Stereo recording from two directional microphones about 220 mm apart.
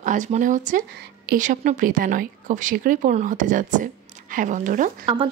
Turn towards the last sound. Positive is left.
turn(degrees=-25)  # may be behind; listen again after turning